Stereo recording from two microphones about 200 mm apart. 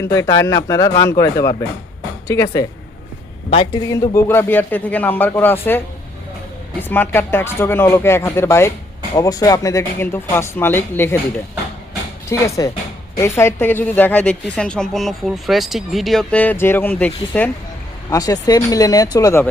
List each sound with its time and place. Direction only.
0.0 s a woman's voice: 15° left (ahead or behind)
3.5 s a man's voice: 25° left (ahead or behind)
3.8 s a woman's voice: 15° left (ahead or behind)
6.8 s a woman's voice: 10° left (ahead or behind)
12.3 s a woman's voice: 15° left (ahead or behind)